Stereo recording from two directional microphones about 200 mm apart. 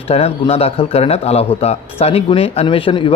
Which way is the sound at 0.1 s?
30° left (ahead or behind).